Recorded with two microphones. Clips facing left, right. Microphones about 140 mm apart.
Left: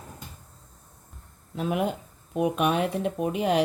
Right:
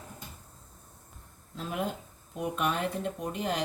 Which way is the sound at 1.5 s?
70° left (ahead or behind).